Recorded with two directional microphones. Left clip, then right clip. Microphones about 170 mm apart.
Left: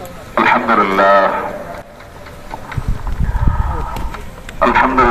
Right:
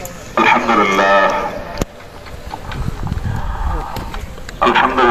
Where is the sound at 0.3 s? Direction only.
15° right (ahead or behind).